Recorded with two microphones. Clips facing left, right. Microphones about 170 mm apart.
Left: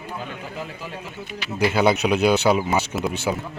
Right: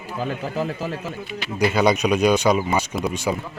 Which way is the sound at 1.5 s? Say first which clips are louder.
Even; 5° left (ahead or behind).